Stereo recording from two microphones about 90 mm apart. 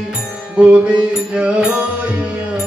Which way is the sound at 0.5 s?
10° right (ahead or behind).